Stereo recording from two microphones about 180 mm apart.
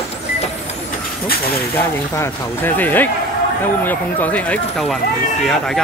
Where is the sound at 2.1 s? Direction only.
15° left (ahead or behind).